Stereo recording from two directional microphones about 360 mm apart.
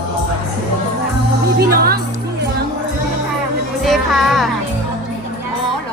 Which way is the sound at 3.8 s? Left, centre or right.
Centre.